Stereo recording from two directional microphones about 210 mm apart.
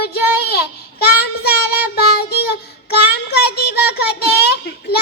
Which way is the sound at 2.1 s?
50° left (ahead or behind).